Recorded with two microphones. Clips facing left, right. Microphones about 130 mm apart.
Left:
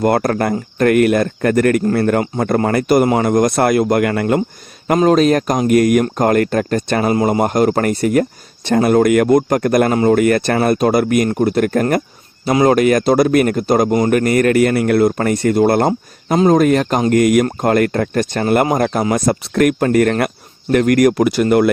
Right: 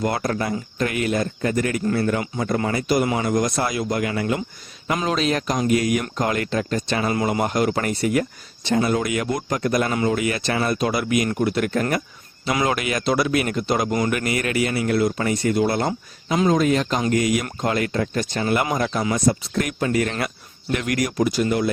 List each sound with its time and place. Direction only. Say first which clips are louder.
0.0 s speech: left 8 dB; 55° left (ahead or behind)
4.9 s speech: left 11 dB; 45° left (ahead or behind)
7.1 s speech: left 7 dB; 35° left (ahead or behind); by 15.9 s 50° left (ahead or behind)
15.9 s speech: left 7 dB; 40° left (ahead or behind); by 21.7 s 60° left (ahead or behind)